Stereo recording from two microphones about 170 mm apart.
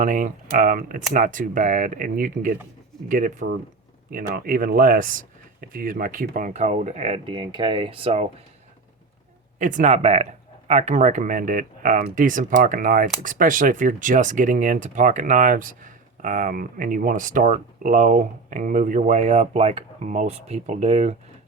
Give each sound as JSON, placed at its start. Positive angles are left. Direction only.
{"t": 0.0, "sound": "speech", "side_deg": -50}
{"t": 9.6, "sound": "speech", "side_deg": -50}